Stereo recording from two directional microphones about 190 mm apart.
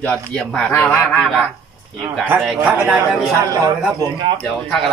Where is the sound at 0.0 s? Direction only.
5° left (ahead or behind).